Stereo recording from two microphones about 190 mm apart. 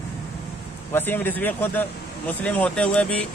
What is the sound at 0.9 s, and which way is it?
Speech, 10° left (ahead or behind).